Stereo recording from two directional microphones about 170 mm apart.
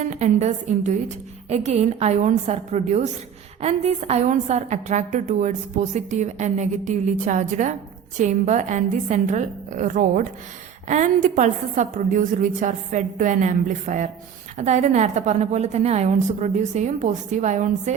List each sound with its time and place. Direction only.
0.0 s a woman's voice: 45° right (ahead or behind)